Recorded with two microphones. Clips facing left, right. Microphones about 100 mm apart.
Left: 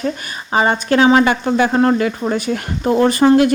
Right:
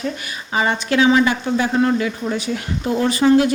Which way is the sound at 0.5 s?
40° left (ahead or behind).